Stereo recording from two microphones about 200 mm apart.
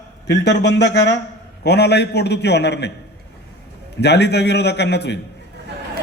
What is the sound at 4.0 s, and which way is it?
A man's voice, 55° left (ahead or behind).